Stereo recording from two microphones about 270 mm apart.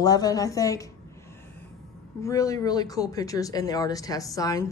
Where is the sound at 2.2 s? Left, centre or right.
Centre.